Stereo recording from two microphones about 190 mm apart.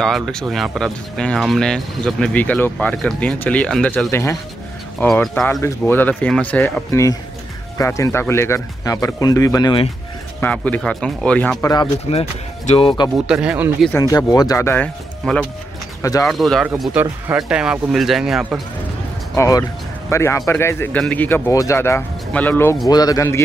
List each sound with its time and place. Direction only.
0.0 s a man's voice: centre (ahead or behind); by 9.8 s 20° left (ahead or behind)
10.4 s a man's voice: 5° left (ahead or behind)
11.7 s speech: 25° left (ahead or behind)
13.3 s speech: 5° right (ahead or behind)
13.9 s a man's voice: 20° left (ahead or behind)
16.0 s speech: 15° left (ahead or behind)
16.3 s speech: centre (ahead or behind)
16.8 s speech: 10° right (ahead or behind)
19.3 s a man's voice: 15° left (ahead or behind)